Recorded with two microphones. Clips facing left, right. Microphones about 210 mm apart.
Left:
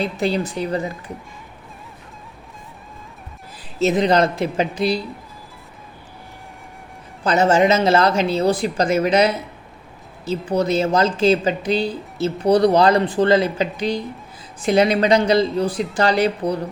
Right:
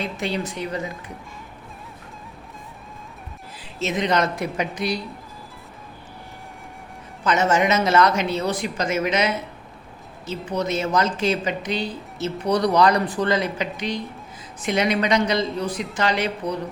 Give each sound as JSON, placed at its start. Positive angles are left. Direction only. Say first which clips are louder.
{"t": 0.0, "sound": "speech", "louder": "left 5 dB", "side_deg": 35}
{"t": 3.8, "sound": "speech", "louder": "left 6 dB", "side_deg": 35}
{"t": 7.3, "sound": "speech", "louder": "left 4 dB", "side_deg": 30}